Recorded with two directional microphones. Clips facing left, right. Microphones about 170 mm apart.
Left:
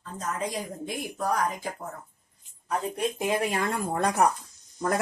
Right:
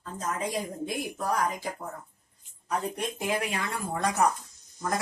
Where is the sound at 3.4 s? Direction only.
45° left (ahead or behind).